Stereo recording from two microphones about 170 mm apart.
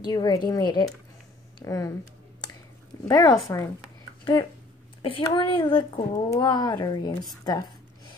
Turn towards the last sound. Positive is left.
turn(degrees=25)  # may be behind; listen again after turning